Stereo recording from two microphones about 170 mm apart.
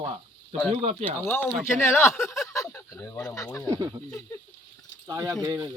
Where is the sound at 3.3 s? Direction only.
15° left (ahead or behind).